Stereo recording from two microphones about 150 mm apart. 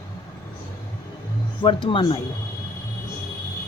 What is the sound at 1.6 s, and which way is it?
Speech, 35° left (ahead or behind).